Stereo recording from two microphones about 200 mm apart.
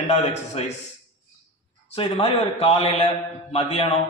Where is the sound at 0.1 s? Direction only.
35° left (ahead or behind).